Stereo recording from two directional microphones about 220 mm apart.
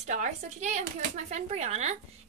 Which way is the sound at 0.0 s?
35° right (ahead or behind).